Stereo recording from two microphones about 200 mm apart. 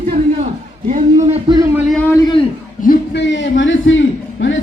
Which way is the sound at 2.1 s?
20° left (ahead or behind).